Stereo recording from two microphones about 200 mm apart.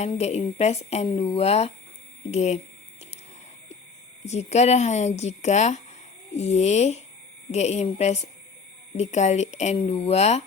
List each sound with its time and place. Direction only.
0.0 s speech: 30° left (ahead or behind)
4.3 s speech: 35° left (ahead or behind)